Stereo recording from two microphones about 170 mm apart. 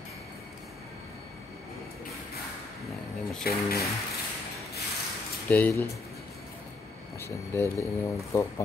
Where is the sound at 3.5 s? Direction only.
65° left (ahead or behind).